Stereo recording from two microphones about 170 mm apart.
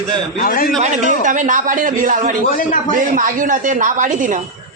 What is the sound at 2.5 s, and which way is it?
Speech, 55° left (ahead or behind).